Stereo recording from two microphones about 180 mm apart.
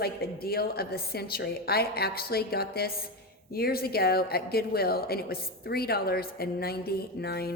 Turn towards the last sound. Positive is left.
turn(degrees=60)  # may be behind; listen again after turning